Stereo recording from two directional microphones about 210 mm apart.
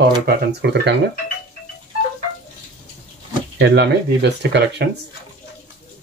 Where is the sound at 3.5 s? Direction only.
55° right (ahead or behind).